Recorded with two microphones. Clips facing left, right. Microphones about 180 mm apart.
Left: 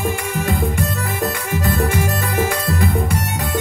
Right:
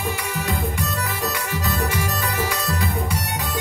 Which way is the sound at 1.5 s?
50° left (ahead or behind).